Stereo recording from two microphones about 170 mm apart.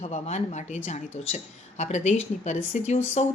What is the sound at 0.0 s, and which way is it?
A woman's voice, 40° left (ahead or behind).